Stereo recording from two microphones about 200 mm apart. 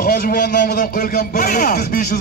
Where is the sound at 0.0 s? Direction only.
50° left (ahead or behind).